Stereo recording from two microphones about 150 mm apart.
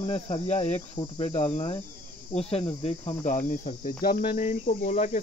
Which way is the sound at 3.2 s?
55° left (ahead or behind).